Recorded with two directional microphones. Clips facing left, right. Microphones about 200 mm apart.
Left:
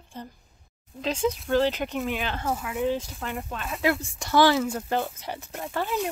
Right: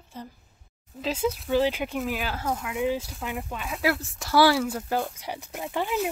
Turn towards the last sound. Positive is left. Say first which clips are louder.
# right 1 dB
turn(degrees=-20)  # may be behind; listen again after turning